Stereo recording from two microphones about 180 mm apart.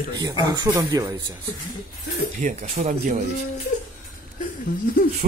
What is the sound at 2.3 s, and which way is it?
Speech, 45° right (ahead or behind).